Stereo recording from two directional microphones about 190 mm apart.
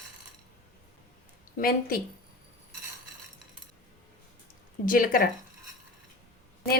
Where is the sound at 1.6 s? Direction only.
50° left (ahead or behind).